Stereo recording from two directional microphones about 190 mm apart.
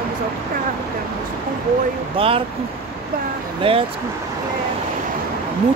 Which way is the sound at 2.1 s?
30° right (ahead or behind).